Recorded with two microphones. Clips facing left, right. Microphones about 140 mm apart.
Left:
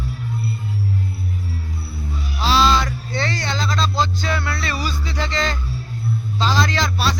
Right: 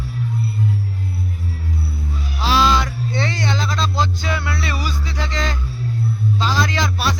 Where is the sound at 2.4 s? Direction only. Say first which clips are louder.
Even; 15° right (ahead or behind).